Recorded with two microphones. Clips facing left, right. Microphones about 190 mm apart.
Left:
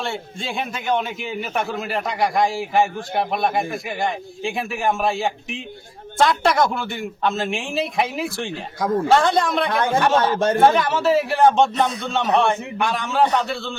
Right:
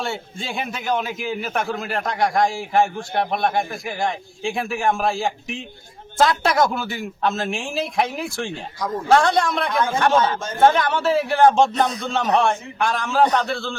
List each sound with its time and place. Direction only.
0.0 s speech: centre (ahead or behind)
9.7 s speech: 65° left (ahead or behind)
10.6 s speech: centre (ahead or behind)